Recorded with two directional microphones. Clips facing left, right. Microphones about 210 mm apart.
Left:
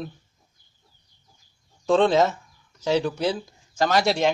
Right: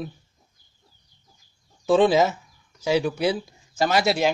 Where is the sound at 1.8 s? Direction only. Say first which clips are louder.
Right 1 dB; 5° right (ahead or behind).